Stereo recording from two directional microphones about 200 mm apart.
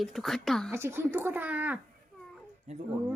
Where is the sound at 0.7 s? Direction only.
10° right (ahead or behind).